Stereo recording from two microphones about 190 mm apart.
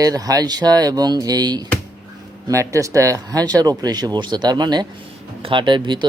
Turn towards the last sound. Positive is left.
turn(degrees=-25)  # may be behind; listen again after turning